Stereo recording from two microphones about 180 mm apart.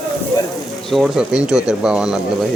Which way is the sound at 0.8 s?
Centre (ahead or behind).